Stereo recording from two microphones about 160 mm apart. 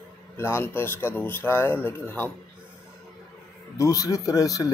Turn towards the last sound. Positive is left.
turn(degrees=20)  # may be behind; listen again after turning